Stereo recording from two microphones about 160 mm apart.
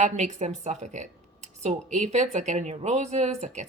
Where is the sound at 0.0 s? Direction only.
45° right (ahead or behind).